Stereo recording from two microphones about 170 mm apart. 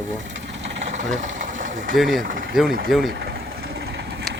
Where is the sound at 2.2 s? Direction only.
55° right (ahead or behind).